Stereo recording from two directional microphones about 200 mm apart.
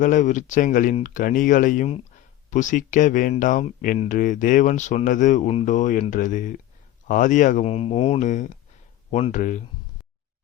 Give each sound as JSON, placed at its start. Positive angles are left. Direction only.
{"t": 0.0, "sound": "speech", "side_deg": 40}